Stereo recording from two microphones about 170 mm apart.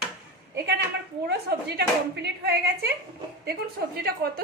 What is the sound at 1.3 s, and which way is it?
A woman's voice, 75° right (ahead or behind).